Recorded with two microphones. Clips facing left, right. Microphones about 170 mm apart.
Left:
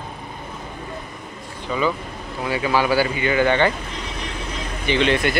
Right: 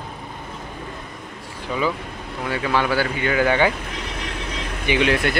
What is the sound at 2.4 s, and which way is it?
Speech, 5° left (ahead or behind).